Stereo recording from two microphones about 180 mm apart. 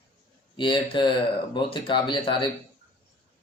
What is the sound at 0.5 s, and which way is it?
Speech, 25° left (ahead or behind).